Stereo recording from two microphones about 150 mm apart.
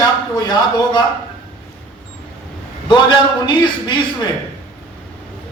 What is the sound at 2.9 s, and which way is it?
A man's voice, 30° left (ahead or behind).